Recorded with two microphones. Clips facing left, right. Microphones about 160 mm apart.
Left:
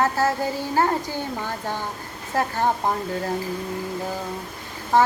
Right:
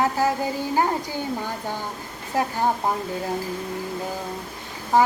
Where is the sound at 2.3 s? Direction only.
15° right (ahead or behind).